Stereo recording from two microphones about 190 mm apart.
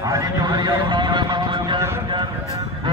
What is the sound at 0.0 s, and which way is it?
Horse, 20° right (ahead or behind).